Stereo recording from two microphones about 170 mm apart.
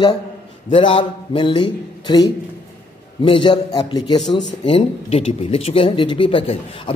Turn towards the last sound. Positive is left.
turn(degrees=30)  # may be behind; listen again after turning